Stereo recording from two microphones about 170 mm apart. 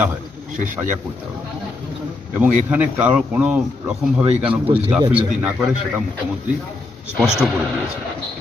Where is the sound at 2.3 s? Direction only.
10° right (ahead or behind).